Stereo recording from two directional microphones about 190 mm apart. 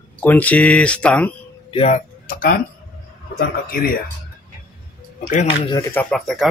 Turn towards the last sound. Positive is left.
turn(degrees=0)  # may be behind; listen again after turning